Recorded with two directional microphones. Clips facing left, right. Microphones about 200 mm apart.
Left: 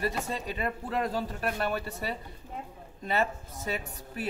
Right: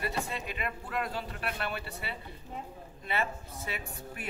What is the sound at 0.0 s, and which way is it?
A woman's voice, 40° left (ahead or behind).